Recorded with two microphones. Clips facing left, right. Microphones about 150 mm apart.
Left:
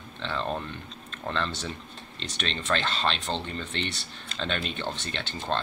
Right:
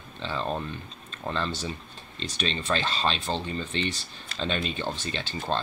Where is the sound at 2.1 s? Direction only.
70° left (ahead or behind).